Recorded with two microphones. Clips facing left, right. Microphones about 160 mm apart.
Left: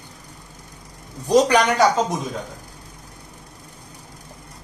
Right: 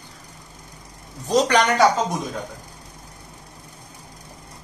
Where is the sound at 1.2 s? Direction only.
10° left (ahead or behind).